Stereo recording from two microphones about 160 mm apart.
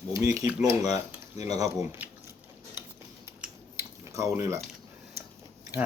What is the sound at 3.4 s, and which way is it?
Scissors, 15° right (ahead or behind).